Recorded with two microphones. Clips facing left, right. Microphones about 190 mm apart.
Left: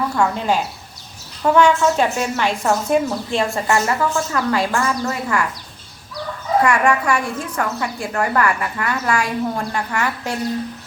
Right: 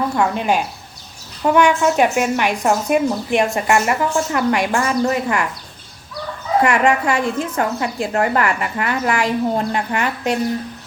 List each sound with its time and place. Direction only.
0.2 s speech: 15° right (ahead or behind)
6.6 s a woman's voice: 20° right (ahead or behind)